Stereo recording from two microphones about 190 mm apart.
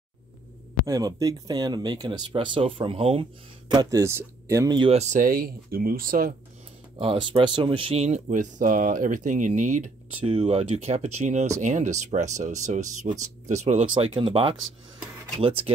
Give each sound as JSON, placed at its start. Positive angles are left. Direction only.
{"t": 0.8, "sound": "speech", "side_deg": -20}
{"t": 7.0, "sound": "speech", "side_deg": -30}